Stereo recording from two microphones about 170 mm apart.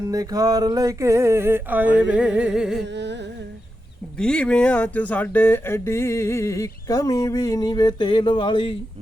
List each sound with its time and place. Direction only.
0.1 s a sound: 20° right (ahead or behind); by 2.8 s centre (ahead or behind)
2.8 s music: 90° right
4.2 s speech: 5° left (ahead or behind); by 8.7 s 30° left (ahead or behind)